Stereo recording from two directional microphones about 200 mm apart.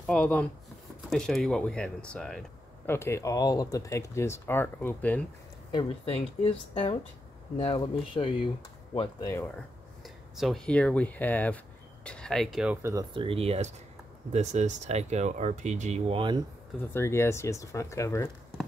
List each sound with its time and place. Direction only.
0.0 s a sound: 5° left (ahead or behind)
1.1 s speech: 5° left (ahead or behind)
5.7 s speech: 25° left (ahead or behind)
10.0 s speech: centre (ahead or behind)
12.8 s speech: 20° right (ahead or behind)
16.9 s speech: 10° left (ahead or behind)